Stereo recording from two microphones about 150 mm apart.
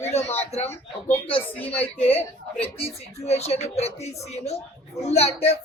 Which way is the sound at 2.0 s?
40° left (ahead or behind).